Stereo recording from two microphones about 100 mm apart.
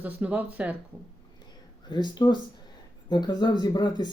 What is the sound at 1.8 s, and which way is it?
Speech, 45° left (ahead or behind).